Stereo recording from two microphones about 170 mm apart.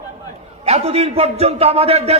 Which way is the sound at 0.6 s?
40° right (ahead or behind).